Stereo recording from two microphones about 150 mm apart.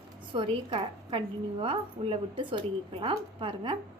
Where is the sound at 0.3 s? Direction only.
35° right (ahead or behind).